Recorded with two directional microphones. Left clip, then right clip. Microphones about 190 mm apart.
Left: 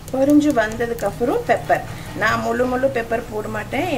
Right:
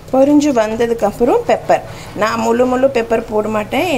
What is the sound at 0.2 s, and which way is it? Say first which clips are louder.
A woman's voice: right 4 dB; 25° right (ahead or behind).